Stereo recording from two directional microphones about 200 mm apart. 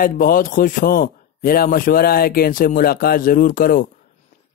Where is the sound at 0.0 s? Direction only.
45° left (ahead or behind).